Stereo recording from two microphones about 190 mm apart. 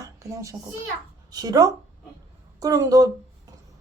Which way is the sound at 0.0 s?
15° right (ahead or behind).